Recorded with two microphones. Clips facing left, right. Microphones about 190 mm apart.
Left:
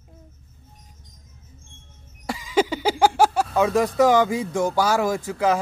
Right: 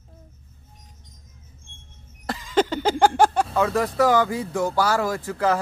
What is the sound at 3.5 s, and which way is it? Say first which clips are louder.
Speech: left 2 dB; 15° left (ahead or behind).